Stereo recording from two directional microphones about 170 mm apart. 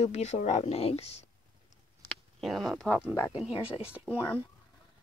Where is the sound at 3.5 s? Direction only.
35° left (ahead or behind).